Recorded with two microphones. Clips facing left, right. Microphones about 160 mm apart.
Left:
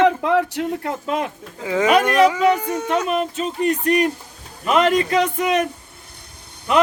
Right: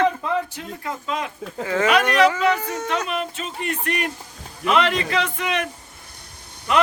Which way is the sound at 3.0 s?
40° left (ahead or behind).